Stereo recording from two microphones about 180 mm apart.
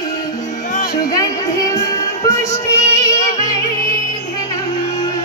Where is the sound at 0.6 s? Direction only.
45° left (ahead or behind).